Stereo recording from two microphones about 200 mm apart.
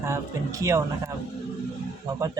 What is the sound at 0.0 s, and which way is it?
Speech, 15° right (ahead or behind).